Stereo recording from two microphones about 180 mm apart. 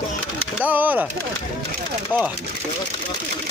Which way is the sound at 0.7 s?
10° right (ahead or behind).